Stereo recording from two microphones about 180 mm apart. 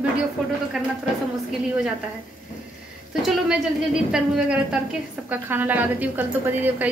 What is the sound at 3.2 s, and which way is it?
A woman's voice, 5° right (ahead or behind).